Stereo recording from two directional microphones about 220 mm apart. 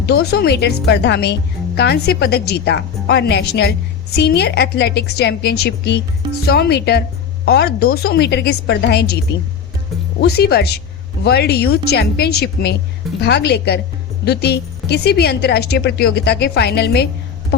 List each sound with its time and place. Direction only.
0.0 s a woman's voice: 45° left (ahead or behind)